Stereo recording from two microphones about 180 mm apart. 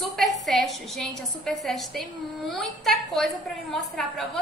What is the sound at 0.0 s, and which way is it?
A woman's voice, centre (ahead or behind).